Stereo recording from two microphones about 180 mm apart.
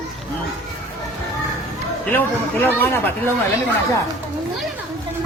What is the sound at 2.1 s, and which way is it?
Speech, 10° left (ahead or behind).